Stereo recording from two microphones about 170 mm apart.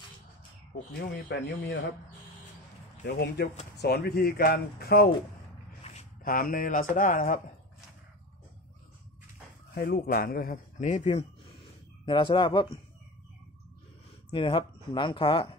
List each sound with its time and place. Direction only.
1.3 s speech: 90° left
3.1 s speech: 75° left (ahead or behind)
5.9 s a sound: 40° left (ahead or behind)
6.2 s speech: 55° left (ahead or behind)
9.8 s speech: 65° left (ahead or behind); by 11.2 s 40° left (ahead or behind)
12.1 s speech: 30° left (ahead or behind)
14.3 s speech: 30° left (ahead or behind)